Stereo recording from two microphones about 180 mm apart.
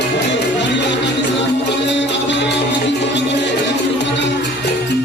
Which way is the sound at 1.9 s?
85° left.